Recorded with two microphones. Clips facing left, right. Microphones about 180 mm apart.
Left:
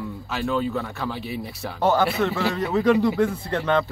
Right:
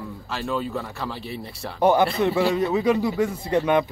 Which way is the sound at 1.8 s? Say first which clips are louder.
Right 2 dB; 15° right (ahead or behind).